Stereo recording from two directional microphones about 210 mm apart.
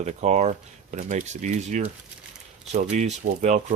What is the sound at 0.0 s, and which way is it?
Speech, 35° right (ahead or behind).